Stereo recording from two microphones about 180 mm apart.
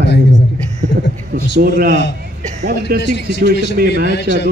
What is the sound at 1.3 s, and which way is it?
A man's voice, 55° right (ahead or behind).